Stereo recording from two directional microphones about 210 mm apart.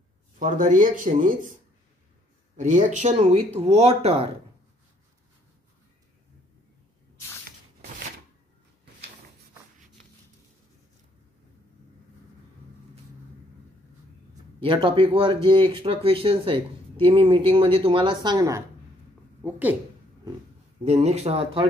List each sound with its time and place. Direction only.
0.4 s speech: 40° right (ahead or behind)
2.5 s speech: 35° right (ahead or behind)
14.6 s speech: 25° right (ahead or behind); by 19.8 s 10° right (ahead or behind)
20.8 s speech: 30° right (ahead or behind)